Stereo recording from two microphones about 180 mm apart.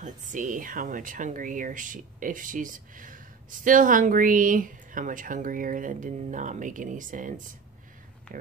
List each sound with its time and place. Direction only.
0.0 s speech: 45° right (ahead or behind)